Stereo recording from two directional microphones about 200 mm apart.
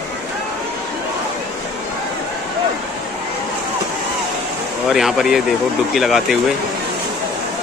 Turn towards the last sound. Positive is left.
turn(degrees=0)  # may be behind; listen again after turning